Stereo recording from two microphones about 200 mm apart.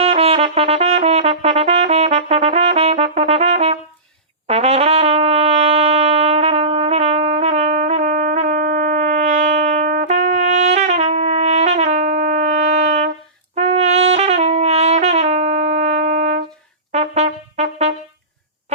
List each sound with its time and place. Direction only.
0.0 s brass instrument: 30° right (ahead or behind)
4.4 s trumpet: 30° right (ahead or behind)
13.6 s brass instrument: 30° right (ahead or behind)
16.9 s trumpet: 35° right (ahead or behind)